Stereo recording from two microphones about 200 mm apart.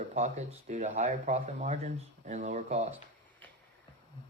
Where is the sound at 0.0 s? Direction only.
35° right (ahead or behind).